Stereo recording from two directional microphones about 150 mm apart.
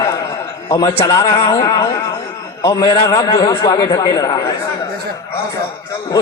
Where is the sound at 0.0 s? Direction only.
25° left (ahead or behind).